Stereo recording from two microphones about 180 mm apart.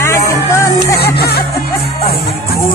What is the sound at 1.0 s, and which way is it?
Music, 60° left (ahead or behind).